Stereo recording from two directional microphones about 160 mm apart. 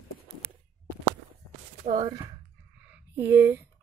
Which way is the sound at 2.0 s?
25° right (ahead or behind).